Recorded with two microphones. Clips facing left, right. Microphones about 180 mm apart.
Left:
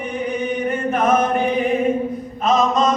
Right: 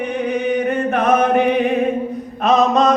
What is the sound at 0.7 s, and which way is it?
Singing, 65° right (ahead or behind).